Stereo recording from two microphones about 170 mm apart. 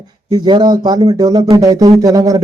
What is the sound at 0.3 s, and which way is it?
Speech, 25° right (ahead or behind).